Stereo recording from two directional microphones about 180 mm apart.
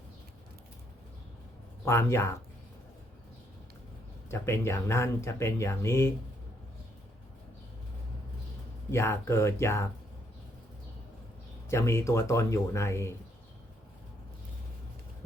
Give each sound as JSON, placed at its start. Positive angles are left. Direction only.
{"t": 1.8, "sound": "speech", "side_deg": 15}
{"t": 4.3, "sound": "speech", "side_deg": 15}
{"t": 8.9, "sound": "speech", "side_deg": 15}
{"t": 11.7, "sound": "speech", "side_deg": 15}